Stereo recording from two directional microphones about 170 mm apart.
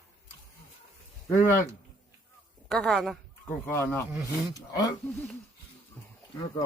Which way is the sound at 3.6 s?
15° left (ahead or behind).